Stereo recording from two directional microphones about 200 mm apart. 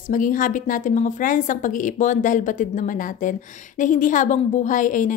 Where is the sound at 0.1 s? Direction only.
40° left (ahead or behind).